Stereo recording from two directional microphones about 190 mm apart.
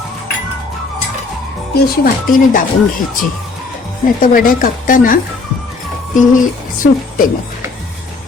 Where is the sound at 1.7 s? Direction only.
50° left (ahead or behind).